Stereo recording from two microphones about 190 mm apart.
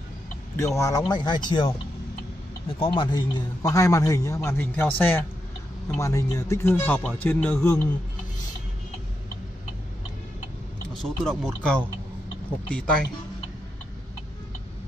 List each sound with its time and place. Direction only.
0.6 s speech: 15° left (ahead or behind)
2.8 s a man's voice: 25° left (ahead or behind); by 7.8 s 10° left (ahead or behind)
10.9 s speech: centre (ahead or behind)